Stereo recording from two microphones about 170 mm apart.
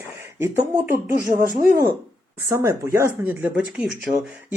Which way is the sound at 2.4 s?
20° right (ahead or behind).